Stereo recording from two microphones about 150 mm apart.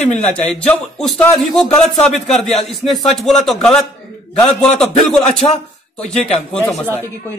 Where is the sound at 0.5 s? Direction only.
5° left (ahead or behind).